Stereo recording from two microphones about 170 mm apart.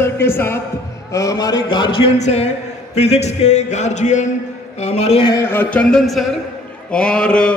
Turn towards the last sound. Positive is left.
turn(degrees=5)  # may be behind; listen again after turning